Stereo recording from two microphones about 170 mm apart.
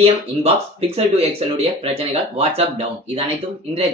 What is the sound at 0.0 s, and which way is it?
Speech, 35° right (ahead or behind).